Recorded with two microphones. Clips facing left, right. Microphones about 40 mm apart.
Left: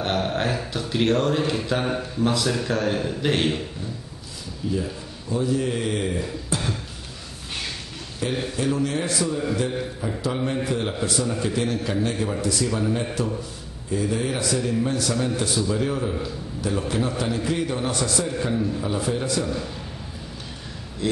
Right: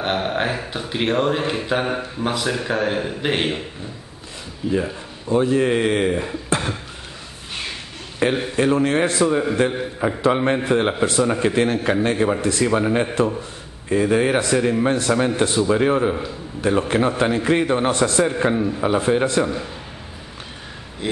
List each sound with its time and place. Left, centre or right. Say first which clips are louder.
0.0 s speech: right 2 dB; right
4.7 s speech: right 5 dB; right
8.2 s a man's voice: right 6 dB; right
21.0 s speech: even; right